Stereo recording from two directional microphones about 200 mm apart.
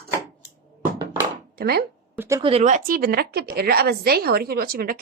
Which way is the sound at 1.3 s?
50° right (ahead or behind).